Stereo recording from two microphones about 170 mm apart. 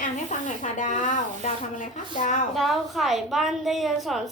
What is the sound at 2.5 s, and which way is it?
A woman's voice, centre (ahead or behind).